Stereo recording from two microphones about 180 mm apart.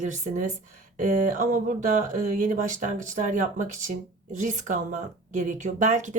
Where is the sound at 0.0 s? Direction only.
40° right (ahead or behind).